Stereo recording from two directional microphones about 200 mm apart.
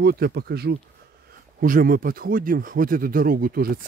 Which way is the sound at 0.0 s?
50° right (ahead or behind).